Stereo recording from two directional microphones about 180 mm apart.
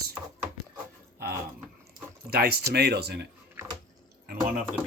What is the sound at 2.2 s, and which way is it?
Speech, 60° right (ahead or behind).